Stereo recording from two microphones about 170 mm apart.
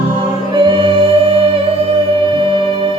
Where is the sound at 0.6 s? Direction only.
30° right (ahead or behind).